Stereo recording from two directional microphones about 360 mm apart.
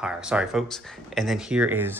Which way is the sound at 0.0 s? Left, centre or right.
Centre.